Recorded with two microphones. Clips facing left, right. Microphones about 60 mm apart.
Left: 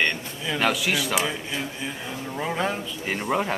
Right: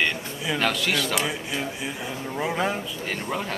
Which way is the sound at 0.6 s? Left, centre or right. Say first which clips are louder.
Left 2 dB; centre.